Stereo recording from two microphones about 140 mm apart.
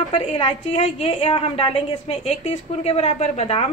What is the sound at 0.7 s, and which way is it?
A woman's voice, 45° left (ahead or behind).